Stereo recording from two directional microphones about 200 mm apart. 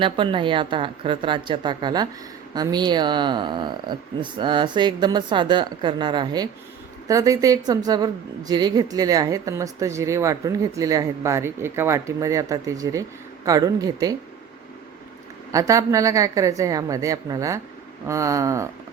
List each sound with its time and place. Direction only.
0.0 s a woman's voice: 25° right (ahead or behind)
15.5 s a woman's voice: 15° right (ahead or behind)